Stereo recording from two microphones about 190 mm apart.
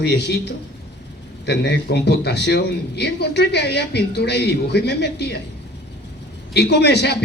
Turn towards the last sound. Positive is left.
turn(degrees=60)  # may be behind; listen again after turning